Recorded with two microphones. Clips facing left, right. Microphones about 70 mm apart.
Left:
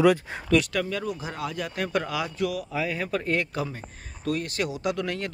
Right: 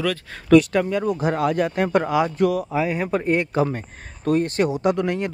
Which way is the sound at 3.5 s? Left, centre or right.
Right.